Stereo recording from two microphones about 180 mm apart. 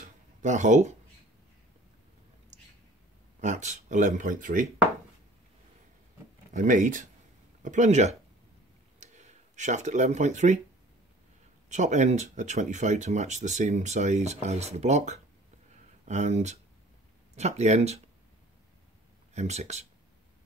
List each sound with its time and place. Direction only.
0.4 s speech: 40° right (ahead or behind)
3.3 s speech: 40° right (ahead or behind)
6.5 s speech: 45° right (ahead or behind)
11.7 s speech: 40° right (ahead or behind)
19.3 s speech: 40° right (ahead or behind)